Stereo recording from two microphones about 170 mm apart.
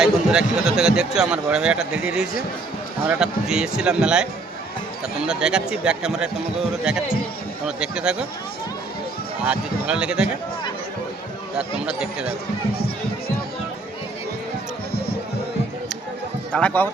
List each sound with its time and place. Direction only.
0.0 s a man's voice: 5° right (ahead or behind)
7.8 s a man's voice: 5° right (ahead or behind)
9.4 s a man's voice: 5° right (ahead or behind)
11.9 s a man's voice: 5° right (ahead or behind)
12.7 s music: 65° left (ahead or behind)
16.5 s speech: 5° left (ahead or behind)